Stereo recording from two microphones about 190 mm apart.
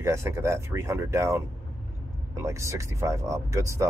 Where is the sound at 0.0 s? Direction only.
15° right (ahead or behind).